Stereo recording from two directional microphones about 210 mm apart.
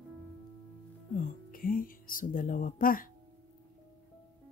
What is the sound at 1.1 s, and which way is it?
Speech, 40° left (ahead or behind).